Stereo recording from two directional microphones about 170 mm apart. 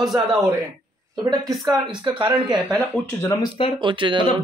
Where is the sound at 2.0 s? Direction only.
30° right (ahead or behind).